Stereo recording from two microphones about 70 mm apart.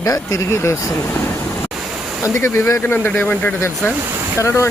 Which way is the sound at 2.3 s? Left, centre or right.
Left.